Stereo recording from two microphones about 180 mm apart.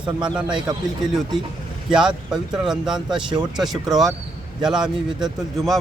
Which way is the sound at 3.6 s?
Centre (ahead or behind).